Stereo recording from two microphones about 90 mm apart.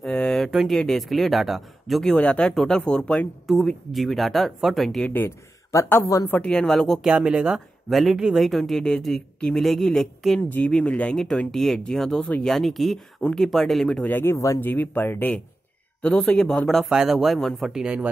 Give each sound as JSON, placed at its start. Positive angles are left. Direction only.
{"t": 0.0, "sound": "a sound", "side_deg": 5}
{"t": 0.5, "sound": "speech", "side_deg": 0}
{"t": 2.1, "sound": "speech", "side_deg": 10}
{"t": 5.0, "sound": "speech", "side_deg": 20}
{"t": 5.7, "sound": "speech", "side_deg": 35}
{"t": 6.4, "sound": "speech", "side_deg": 10}
{"t": 7.1, "sound": "speech", "side_deg": -10}
{"t": 14.0, "sound": "speech", "side_deg": 25}
{"t": 14.6, "sound": "speech", "side_deg": 20}
{"t": 16.9, "sound": "speech", "side_deg": -5}